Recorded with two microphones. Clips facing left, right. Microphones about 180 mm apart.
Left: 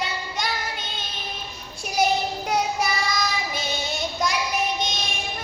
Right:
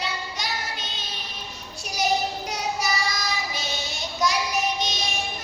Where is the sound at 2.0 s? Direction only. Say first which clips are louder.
Left 2 dB; 55° left (ahead or behind).